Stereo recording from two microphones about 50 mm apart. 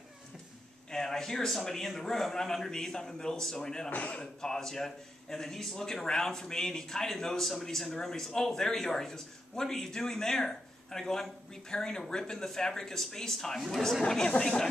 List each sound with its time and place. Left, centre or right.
0.9 s a man's voice: centre
3.9 s a man's voice: left
4.2 s a man's voice: centre